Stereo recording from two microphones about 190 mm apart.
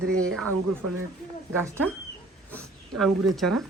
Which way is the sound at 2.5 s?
5° left (ahead or behind).